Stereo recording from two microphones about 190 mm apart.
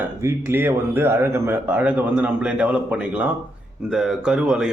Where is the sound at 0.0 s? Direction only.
15° right (ahead or behind).